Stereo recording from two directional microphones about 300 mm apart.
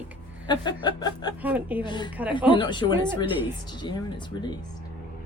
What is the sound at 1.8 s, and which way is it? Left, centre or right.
Speech, centre.